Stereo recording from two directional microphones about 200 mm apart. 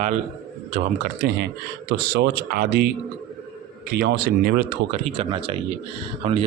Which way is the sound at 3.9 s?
50° right (ahead or behind).